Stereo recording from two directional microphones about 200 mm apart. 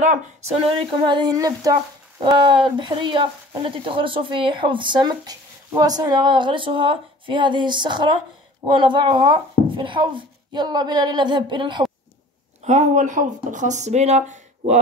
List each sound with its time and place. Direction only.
0.0 s speech: 35° right (ahead or behind)
12.6 s speech: 35° right (ahead or behind)